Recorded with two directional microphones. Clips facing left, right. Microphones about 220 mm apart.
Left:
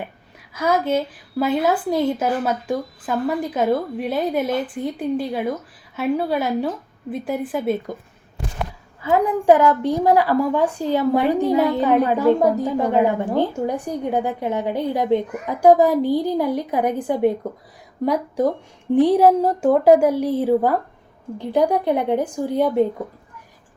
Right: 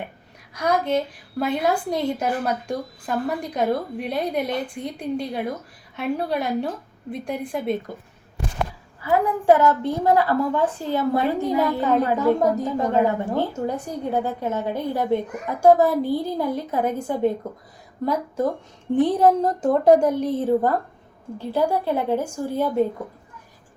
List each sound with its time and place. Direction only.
0.5 s a woman's voice: 5° left (ahead or behind)
9.0 s a woman's voice: 20° left (ahead or behind)